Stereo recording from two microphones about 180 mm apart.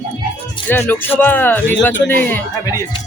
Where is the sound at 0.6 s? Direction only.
10° left (ahead or behind).